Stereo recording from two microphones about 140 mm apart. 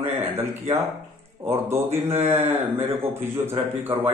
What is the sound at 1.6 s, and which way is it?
A man's voice, 15° right (ahead or behind).